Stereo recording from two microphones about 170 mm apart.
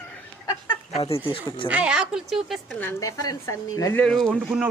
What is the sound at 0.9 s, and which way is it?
Speech, 35° left (ahead or behind).